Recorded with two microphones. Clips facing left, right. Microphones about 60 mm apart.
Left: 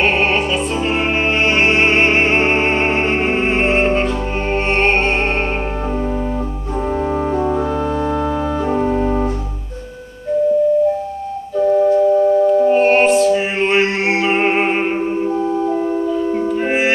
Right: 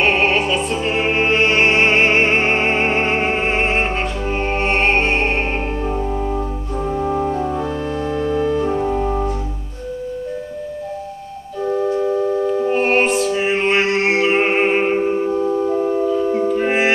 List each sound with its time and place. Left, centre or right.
0.0 s music: centre
7.3 s music: left
8.1 s organ: centre
8.7 s organ: left
12.7 s music: centre
16.1 s music: centre